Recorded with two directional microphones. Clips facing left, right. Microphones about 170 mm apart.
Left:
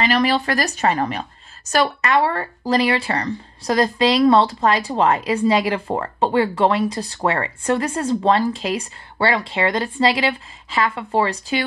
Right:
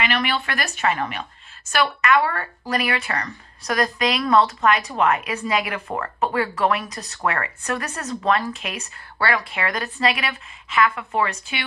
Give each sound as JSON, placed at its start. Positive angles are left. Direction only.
{"t": 0.0, "sound": "speech", "side_deg": 35}